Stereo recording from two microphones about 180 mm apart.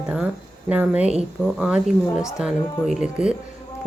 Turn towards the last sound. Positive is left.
turn(degrees=-5)  # may be behind; listen again after turning